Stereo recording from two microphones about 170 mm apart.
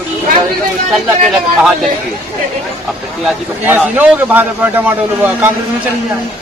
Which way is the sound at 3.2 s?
10° right (ahead or behind).